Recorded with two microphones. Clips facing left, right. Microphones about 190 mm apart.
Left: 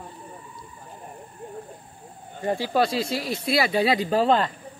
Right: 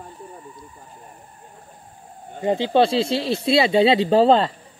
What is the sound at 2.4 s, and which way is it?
Speech, 20° right (ahead or behind).